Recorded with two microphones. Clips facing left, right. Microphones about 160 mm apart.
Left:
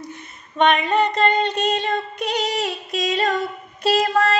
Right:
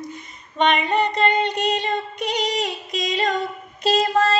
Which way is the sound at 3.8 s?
20° right (ahead or behind).